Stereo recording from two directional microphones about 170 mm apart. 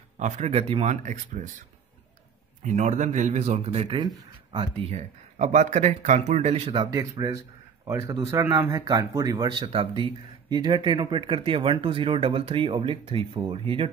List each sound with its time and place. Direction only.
0.2 s speech: 40° right (ahead or behind)
2.6 s speech: 45° right (ahead or behind)
6.9 s speech: 20° right (ahead or behind)